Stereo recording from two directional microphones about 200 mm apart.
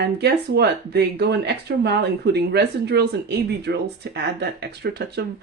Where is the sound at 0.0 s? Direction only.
55° right (ahead or behind).